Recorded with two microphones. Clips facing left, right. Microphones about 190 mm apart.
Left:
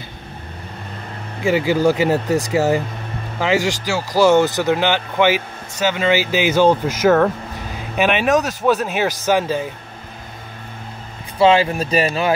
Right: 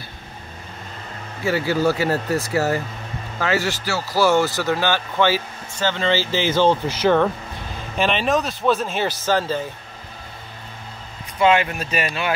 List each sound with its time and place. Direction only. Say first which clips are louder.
1.4 s speech: left 4 dB; 15° left (ahead or behind)
11.3 s speech: left 4 dB; 30° left (ahead or behind)